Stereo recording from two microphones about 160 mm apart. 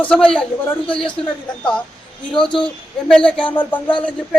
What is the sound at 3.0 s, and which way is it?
Speech, 5° left (ahead or behind).